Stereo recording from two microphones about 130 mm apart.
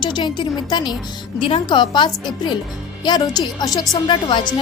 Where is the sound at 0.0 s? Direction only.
35° left (ahead or behind).